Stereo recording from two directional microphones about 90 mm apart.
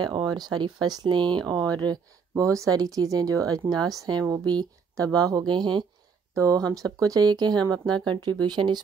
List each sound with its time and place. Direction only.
0.0 s speech: 55° right (ahead or behind)
1.5 s speech: 50° right (ahead or behind)
6.3 s speech: 40° right (ahead or behind); by 8.8 s 55° right (ahead or behind)